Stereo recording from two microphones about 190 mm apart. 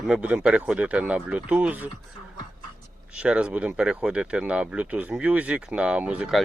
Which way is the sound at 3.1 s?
5° right (ahead or behind).